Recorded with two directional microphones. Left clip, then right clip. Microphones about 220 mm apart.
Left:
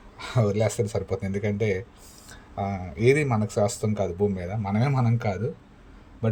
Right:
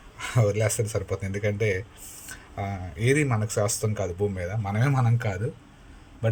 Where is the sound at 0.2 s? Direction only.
Centre (ahead or behind).